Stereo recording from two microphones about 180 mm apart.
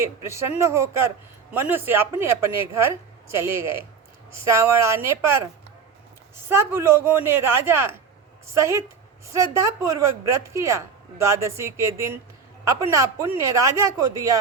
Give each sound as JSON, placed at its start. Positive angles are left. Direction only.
{"t": 0.0, "sound": "speech", "side_deg": -15}
{"t": 3.3, "sound": "speech", "side_deg": -15}
{"t": 6.5, "sound": "speech", "side_deg": -15}